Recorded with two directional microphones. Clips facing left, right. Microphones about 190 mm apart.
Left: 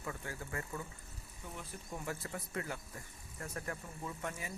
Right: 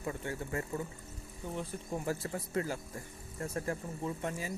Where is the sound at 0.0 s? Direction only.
25° right (ahead or behind).